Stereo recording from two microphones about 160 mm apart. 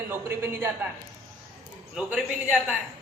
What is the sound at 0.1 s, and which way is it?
Speech, 15° right (ahead or behind).